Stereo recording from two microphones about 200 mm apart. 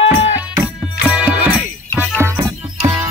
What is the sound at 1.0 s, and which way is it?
Music, 5° right (ahead or behind).